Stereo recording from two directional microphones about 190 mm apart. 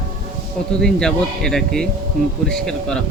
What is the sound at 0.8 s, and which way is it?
Speech, 5° left (ahead or behind).